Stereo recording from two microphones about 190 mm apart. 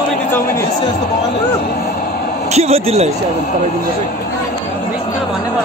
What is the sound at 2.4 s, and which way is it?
Speech, 35° right (ahead or behind).